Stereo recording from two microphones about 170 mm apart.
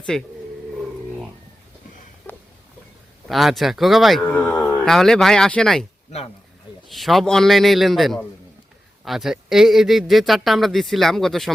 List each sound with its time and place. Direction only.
0.0 s a man's voice: 5° left (ahead or behind)
2.3 s a sound: 5° left (ahead or behind)
3.2 s a man's voice: centre (ahead or behind)
4.6 s a sound: 15° left (ahead or behind)
4.9 s a man's voice: centre (ahead or behind)
6.8 s a man's voice: centre (ahead or behind)